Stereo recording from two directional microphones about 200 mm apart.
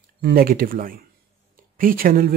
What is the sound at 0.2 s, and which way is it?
Speech, 50° right (ahead or behind).